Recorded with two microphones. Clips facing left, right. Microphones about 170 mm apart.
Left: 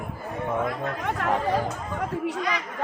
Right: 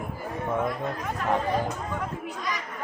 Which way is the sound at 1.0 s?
75° left (ahead or behind).